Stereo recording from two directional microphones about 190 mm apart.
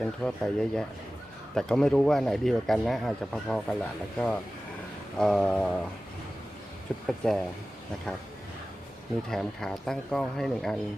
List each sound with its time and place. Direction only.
0.0 s speech: centre (ahead or behind)
7.1 s speech: centre (ahead or behind)
9.3 s speech: 5° left (ahead or behind)